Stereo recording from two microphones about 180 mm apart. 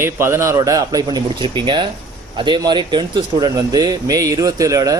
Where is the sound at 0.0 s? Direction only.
15° right (ahead or behind).